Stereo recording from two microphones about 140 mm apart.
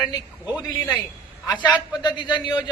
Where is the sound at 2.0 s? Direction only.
35° left (ahead or behind).